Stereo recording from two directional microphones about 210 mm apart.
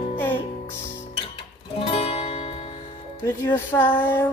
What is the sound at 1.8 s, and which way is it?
Music, 30° left (ahead or behind).